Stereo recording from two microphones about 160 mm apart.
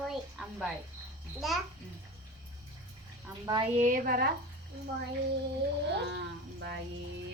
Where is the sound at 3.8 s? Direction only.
60° right (ahead or behind).